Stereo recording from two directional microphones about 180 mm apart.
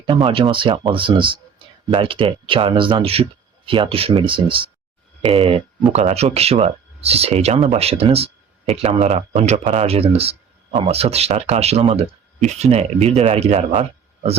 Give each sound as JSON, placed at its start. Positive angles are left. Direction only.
{"t": 0.0, "sound": "speech", "side_deg": -25}